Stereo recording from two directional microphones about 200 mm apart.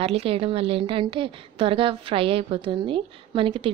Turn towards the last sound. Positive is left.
turn(degrees=-25)  # may be behind; listen again after turning